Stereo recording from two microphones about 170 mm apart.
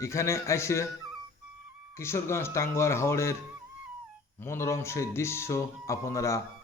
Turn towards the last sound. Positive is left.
turn(degrees=15)  # may be behind; listen again after turning